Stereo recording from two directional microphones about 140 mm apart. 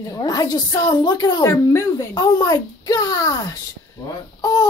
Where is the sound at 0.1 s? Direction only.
25° left (ahead or behind).